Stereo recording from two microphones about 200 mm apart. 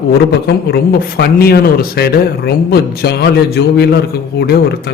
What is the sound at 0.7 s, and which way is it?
A man's voice, 50° left (ahead or behind).